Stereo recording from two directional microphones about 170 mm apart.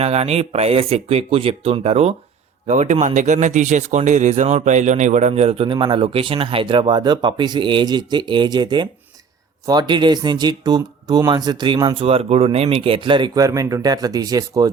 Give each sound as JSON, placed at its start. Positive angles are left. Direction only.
{"t": 0.0, "sound": "speech", "side_deg": -40}